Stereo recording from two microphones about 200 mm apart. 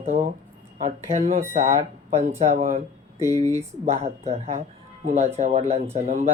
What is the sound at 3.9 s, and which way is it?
Speech, 35° right (ahead or behind).